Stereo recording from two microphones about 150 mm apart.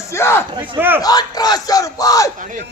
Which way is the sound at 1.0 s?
25° left (ahead or behind).